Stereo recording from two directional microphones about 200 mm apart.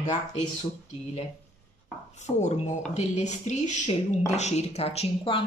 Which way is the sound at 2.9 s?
35° left (ahead or behind).